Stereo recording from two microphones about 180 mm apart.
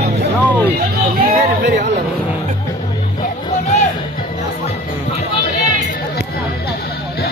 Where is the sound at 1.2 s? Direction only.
70° right (ahead or behind).